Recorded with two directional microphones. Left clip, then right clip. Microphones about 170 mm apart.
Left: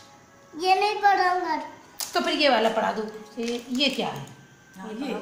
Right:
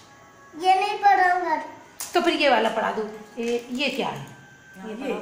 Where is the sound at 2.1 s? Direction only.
15° right (ahead or behind).